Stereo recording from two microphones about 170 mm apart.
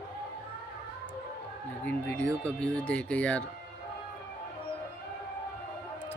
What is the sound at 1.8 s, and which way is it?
Speech, 10° left (ahead or behind).